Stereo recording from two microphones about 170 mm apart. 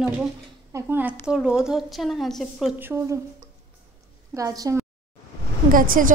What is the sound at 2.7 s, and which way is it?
Speech, 15° right (ahead or behind).